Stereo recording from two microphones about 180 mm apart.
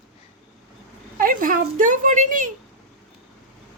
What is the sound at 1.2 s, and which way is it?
A woman's voice, 50° right (ahead or behind).